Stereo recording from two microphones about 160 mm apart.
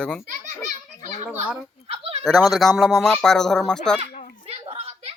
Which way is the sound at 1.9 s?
40° right (ahead or behind).